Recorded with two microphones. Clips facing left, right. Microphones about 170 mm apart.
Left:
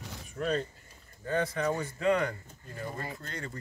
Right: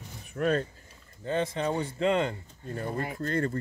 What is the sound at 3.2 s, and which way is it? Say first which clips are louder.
Speech: right 12 dB; 55° right (ahead or behind).